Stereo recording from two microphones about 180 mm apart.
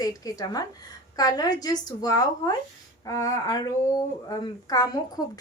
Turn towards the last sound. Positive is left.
turn(degrees=20)  # may be behind; listen again after turning